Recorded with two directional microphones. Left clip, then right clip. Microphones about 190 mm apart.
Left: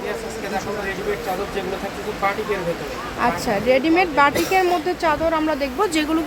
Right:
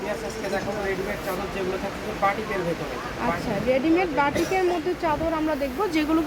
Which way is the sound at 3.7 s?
20° left (ahead or behind).